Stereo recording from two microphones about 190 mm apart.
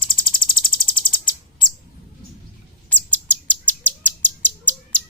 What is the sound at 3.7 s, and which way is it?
Bird, 10° left (ahead or behind).